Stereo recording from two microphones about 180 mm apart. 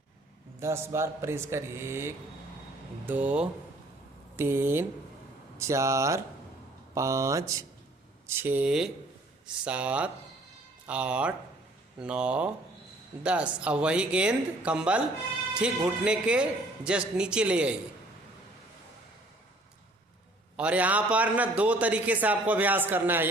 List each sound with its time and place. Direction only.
0.6 s a man's voice: 15° right (ahead or behind)
20.6 s a man's voice: 5° right (ahead or behind)